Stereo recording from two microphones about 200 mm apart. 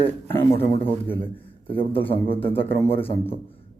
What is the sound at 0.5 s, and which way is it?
Speech, 30° left (ahead or behind).